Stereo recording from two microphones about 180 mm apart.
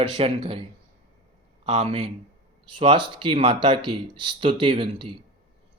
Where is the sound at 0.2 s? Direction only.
30° right (ahead or behind).